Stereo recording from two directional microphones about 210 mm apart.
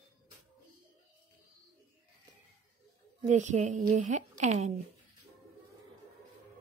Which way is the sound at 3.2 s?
35° right (ahead or behind).